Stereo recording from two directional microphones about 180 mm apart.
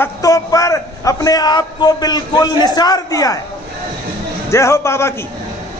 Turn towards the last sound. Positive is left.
turn(degrees=15)  # may be behind; listen again after turning